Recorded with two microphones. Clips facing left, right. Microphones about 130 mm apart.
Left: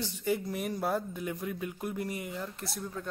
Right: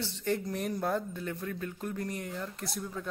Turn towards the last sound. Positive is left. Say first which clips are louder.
# right 1 dB
turn(degrees=0)  # may be behind; listen again after turning